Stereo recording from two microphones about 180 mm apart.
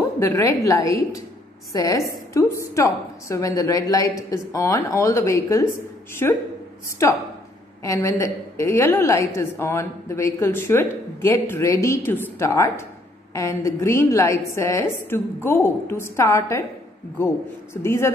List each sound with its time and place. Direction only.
0.2 s a woman's voice: 15° left (ahead or behind)
17.8 s a woman's voice: 15° left (ahead or behind)